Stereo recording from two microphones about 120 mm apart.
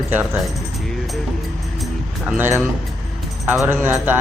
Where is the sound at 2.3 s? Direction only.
20° right (ahead or behind).